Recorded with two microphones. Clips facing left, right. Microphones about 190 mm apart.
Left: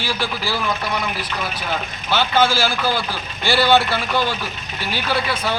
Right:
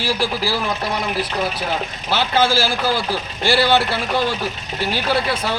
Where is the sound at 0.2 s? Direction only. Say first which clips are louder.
Right 3 dB; 30° right (ahead or behind).